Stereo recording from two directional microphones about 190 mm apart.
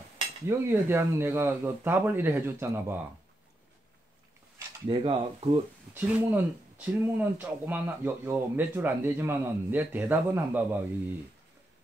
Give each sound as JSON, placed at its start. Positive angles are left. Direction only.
{"t": 0.5, "sound": "speech", "side_deg": -10}
{"t": 4.8, "sound": "speech", "side_deg": -30}
{"t": 5.9, "sound": "speech", "side_deg": -10}